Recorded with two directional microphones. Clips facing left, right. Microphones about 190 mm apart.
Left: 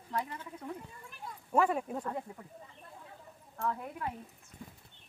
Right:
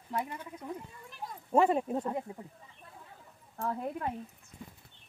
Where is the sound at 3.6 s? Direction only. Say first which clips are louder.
Right 2 dB; 35° right (ahead or behind).